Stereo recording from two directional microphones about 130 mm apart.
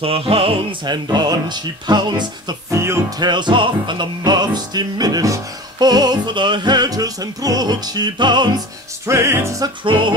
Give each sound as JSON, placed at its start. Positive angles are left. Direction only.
{"t": 0.0, "sound": "music", "side_deg": -45}
{"t": 2.8, "sound": "music", "side_deg": -20}
{"t": 3.3, "sound": "music", "side_deg": -35}
{"t": 9.0, "sound": "music", "side_deg": -20}
{"t": 9.8, "sound": "music", "side_deg": -40}